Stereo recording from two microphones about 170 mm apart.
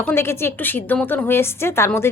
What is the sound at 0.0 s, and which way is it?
A woman's voice, 15° left (ahead or behind).